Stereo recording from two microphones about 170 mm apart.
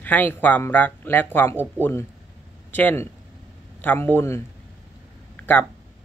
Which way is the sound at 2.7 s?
10° left (ahead or behind).